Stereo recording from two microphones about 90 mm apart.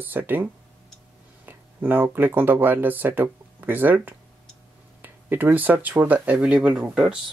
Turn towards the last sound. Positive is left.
turn(degrees=-10)  # may be behind; listen again after turning